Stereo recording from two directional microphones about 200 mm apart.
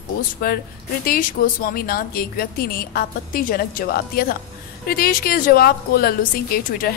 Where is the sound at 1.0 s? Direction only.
45° left (ahead or behind).